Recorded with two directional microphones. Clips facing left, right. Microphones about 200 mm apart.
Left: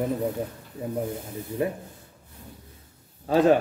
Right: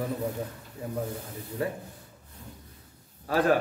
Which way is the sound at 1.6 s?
20° left (ahead or behind).